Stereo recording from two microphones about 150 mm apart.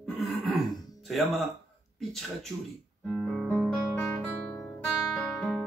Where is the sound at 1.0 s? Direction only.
Centre (ahead or behind).